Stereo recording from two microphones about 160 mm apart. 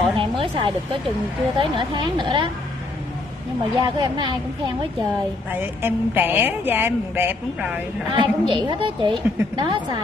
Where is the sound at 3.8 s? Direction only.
30° right (ahead or behind).